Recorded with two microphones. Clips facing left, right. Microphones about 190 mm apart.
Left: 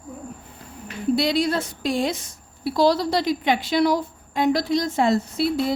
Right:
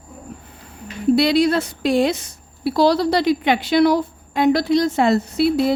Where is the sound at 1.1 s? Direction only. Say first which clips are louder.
Right 5 dB; 70° right (ahead or behind).